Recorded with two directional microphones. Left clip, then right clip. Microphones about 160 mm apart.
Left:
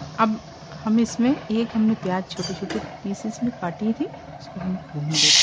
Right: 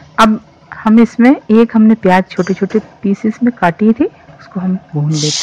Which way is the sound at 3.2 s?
15° right (ahead or behind).